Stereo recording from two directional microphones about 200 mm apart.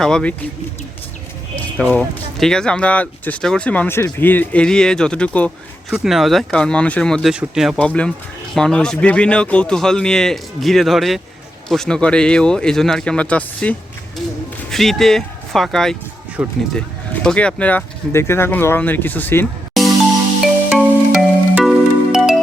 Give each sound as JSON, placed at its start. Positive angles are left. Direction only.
{"t": 0.0, "sound": "speech", "side_deg": 5}
{"t": 1.5, "sound": "speech", "side_deg": 10}
{"t": 17.2, "sound": "speech", "side_deg": 5}
{"t": 19.8, "sound": "music", "side_deg": 0}